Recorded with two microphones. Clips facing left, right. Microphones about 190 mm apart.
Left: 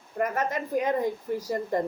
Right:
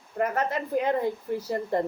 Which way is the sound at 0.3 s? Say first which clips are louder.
Right 1 dB; 15° left (ahead or behind).